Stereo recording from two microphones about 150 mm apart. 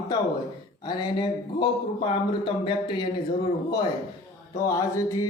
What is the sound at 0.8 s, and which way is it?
A man's voice, 30° left (ahead or behind).